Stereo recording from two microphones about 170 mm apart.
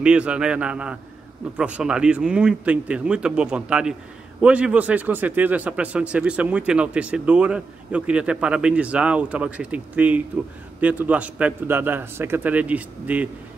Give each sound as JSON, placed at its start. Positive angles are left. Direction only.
{"t": 0.0, "sound": "speech", "side_deg": -5}